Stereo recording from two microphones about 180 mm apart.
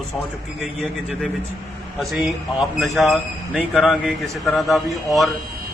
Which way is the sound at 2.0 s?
Centre (ahead or behind).